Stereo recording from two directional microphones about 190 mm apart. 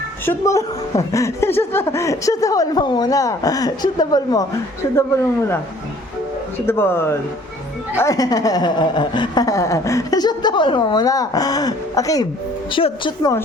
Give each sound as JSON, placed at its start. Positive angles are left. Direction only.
{"t": 0.3, "sound": "speech", "side_deg": 15}
{"t": 6.7, "sound": "a woman's voice", "side_deg": 10}